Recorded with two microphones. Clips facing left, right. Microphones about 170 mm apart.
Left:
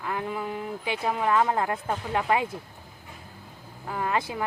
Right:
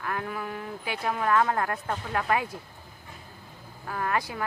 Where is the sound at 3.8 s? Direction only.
15° left (ahead or behind).